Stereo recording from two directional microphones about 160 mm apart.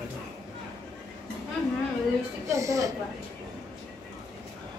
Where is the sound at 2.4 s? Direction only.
20° right (ahead or behind).